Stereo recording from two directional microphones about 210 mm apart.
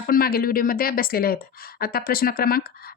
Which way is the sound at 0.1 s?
45° left (ahead or behind).